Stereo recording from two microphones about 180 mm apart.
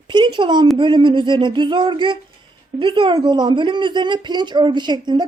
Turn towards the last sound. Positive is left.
turn(degrees=-25)  # may be behind; listen again after turning